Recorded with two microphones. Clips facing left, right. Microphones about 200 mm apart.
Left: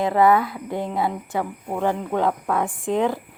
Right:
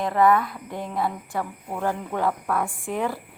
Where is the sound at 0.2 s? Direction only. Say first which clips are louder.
Left 1 dB; 30° left (ahead or behind).